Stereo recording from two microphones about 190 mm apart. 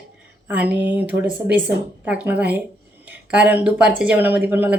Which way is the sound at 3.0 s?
5° right (ahead or behind).